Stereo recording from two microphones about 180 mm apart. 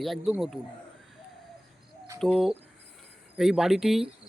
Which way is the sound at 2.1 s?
Centre (ahead or behind).